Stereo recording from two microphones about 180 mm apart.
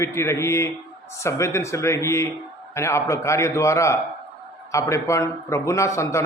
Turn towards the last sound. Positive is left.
turn(degrees=15)  # may be behind; listen again after turning